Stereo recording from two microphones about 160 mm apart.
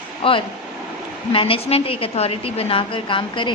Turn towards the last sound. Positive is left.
turn(degrees=30)  # may be behind; listen again after turning